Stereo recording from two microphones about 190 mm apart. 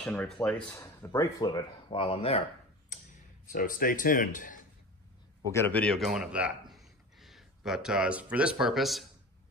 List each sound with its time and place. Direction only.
0.0 s speech: 10° left (ahead or behind); by 2.4 s 30° left (ahead or behind)
3.5 s speech: 45° left (ahead or behind)
5.5 s a man's voice: 10° left (ahead or behind)